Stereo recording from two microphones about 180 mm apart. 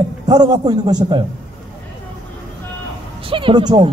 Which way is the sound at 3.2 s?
30° right (ahead or behind).